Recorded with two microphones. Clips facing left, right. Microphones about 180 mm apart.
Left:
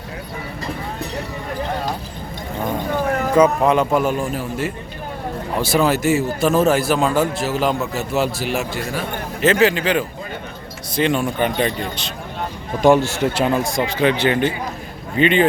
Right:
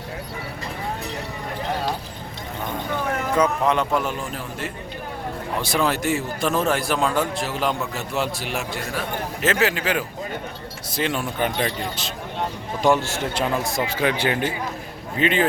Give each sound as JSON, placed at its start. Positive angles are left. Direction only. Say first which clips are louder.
{"t": 3.2, "sound": "a sound", "louder": "left 7 dB", "side_deg": 30}
{"t": 3.7, "sound": "a man's voice", "louder": "left 5 dB", "side_deg": 10}
{"t": 12.8, "sound": "a man's voice", "louder": "left 6 dB", "side_deg": 15}
{"t": 13.3, "sound": "a man's voice", "louder": "left 1 dB", "side_deg": -5}